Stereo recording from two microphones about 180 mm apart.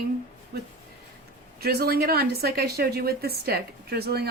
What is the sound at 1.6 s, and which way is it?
A woman's voice, 60° right (ahead or behind).